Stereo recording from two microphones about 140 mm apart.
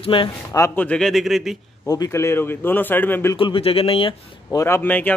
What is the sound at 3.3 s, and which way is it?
Speech, 40° left (ahead or behind).